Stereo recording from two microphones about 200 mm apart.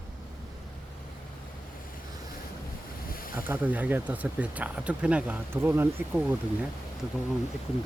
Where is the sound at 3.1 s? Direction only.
45° left (ahead or behind).